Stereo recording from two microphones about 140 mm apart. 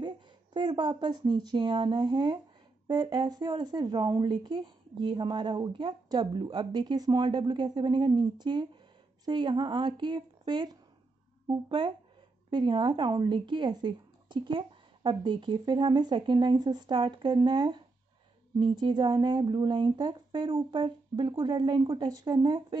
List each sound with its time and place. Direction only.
0.0 s speech: 30° right (ahead or behind)